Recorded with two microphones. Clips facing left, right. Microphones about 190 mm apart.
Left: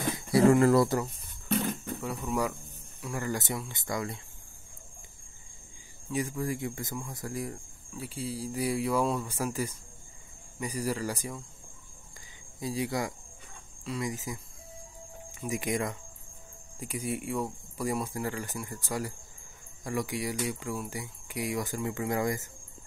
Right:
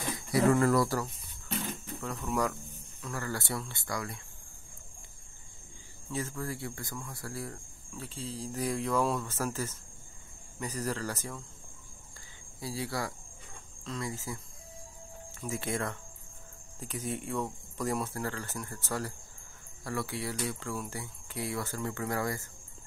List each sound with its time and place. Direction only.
0.3 s speech: 25° left (ahead or behind)
2.0 s speech: 5° left (ahead or behind); by 4.2 s 20° left (ahead or behind)
6.1 s speech: 15° left (ahead or behind)
12.5 s speech: 20° left (ahead or behind)
15.4 s speech: 15° left (ahead or behind)